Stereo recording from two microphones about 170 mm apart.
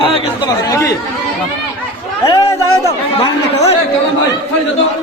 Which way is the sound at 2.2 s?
20° left (ahead or behind).